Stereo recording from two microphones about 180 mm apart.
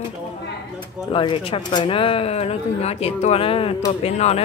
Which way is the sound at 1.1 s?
30° left (ahead or behind).